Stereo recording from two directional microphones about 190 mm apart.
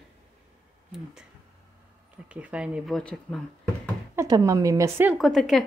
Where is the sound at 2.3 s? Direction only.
5° right (ahead or behind).